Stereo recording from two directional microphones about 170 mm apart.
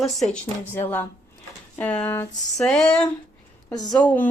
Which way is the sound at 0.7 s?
10° left (ahead or behind).